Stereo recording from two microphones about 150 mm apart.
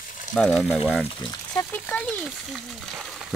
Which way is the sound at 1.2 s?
20° left (ahead or behind).